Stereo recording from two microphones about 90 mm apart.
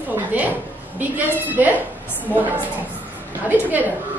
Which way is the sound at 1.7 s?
20° left (ahead or behind).